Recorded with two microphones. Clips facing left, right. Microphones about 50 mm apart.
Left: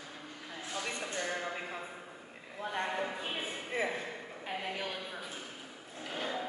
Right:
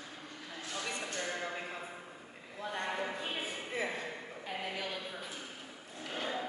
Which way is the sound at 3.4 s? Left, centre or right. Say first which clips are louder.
Left 5 dB; left.